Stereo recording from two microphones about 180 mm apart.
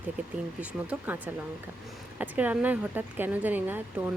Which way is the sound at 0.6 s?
10° right (ahead or behind).